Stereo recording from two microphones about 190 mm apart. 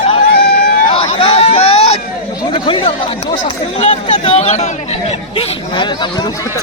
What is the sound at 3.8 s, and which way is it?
Speech, 35° left (ahead or behind).